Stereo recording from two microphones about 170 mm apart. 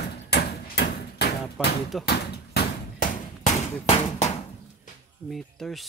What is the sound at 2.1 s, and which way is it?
Bouncing, 70° left (ahead or behind).